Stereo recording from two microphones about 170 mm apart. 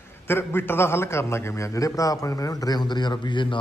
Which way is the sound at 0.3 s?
15° left (ahead or behind).